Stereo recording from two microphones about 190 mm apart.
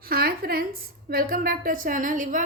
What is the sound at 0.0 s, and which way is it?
A woman's voice, 50° right (ahead or behind).